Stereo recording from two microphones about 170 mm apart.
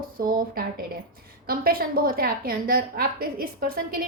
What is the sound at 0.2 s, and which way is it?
A woman's voice, 60° right (ahead or behind).